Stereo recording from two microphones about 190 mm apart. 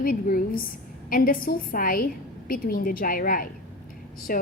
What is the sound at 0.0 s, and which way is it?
A woman's voice, 45° left (ahead or behind).